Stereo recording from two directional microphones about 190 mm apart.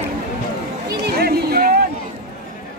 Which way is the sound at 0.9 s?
55° right (ahead or behind).